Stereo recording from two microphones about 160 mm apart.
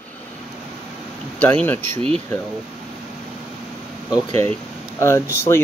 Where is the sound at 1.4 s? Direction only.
10° left (ahead or behind).